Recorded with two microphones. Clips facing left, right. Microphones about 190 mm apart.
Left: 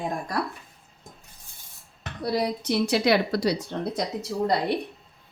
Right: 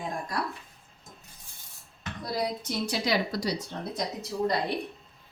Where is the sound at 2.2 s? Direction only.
70° left (ahead or behind).